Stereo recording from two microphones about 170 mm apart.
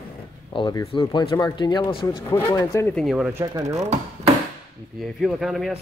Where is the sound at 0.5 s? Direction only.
25° left (ahead or behind).